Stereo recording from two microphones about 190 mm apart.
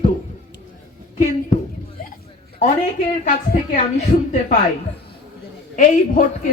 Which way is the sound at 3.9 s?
40° left (ahead or behind).